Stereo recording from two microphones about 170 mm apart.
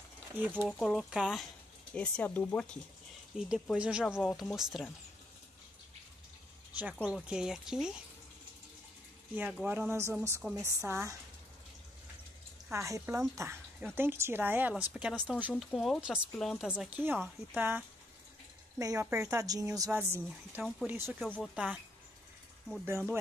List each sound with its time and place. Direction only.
0.4 s speech: 10° right (ahead or behind)
0.7 s speech: centre (ahead or behind)
2.0 s speech: 10° left (ahead or behind)
7.1 s speech: 5° right (ahead or behind)
9.3 s speech: 10° right (ahead or behind)
12.7 s speech: 15° right (ahead or behind)
15.5 s speech: centre (ahead or behind)
18.8 s speech: 20° right (ahead or behind)
21.2 s speech: centre (ahead or behind)
22.8 s speech: 15° right (ahead or behind)